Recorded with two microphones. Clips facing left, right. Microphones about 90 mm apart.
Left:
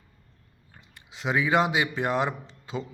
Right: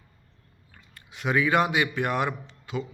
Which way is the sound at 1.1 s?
20° left (ahead or behind).